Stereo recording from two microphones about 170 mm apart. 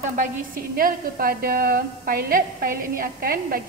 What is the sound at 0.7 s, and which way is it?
A woman's voice, 60° right (ahead or behind).